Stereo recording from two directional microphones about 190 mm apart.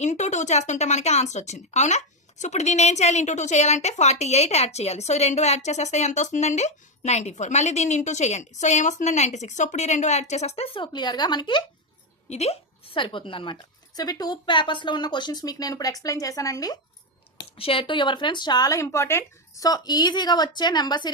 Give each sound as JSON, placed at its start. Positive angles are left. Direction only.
{"t": 0.0, "sound": "a woman's voice", "side_deg": 40}